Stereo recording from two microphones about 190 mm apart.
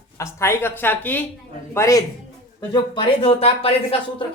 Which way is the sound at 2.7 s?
25° left (ahead or behind).